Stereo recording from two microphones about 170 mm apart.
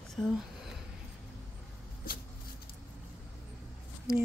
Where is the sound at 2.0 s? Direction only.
60° left (ahead or behind).